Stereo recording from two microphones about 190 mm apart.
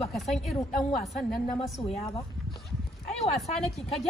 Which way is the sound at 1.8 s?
30° left (ahead or behind).